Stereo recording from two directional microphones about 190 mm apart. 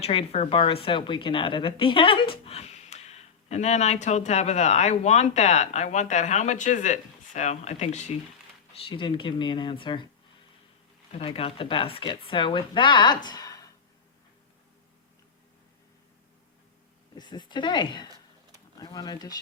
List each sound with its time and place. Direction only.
0.0 s a woman's voice: 30° left (ahead or behind)
11.1 s speech: 30° left (ahead or behind)
17.2 s speech: 25° left (ahead or behind)